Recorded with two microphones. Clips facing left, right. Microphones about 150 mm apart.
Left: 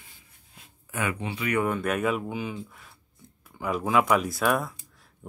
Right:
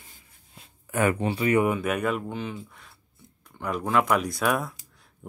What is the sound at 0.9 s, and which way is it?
Speech, 45° right (ahead or behind).